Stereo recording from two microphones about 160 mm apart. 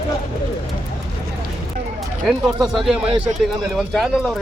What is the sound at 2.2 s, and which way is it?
Speech, centre (ahead or behind).